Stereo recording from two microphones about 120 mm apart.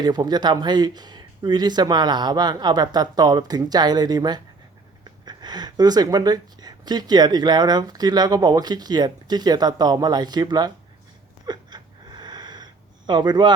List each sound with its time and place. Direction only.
0.0 s speech: 35° right (ahead or behind)
11.4 s a sound: 35° right (ahead or behind)
13.1 s speech: 40° right (ahead or behind)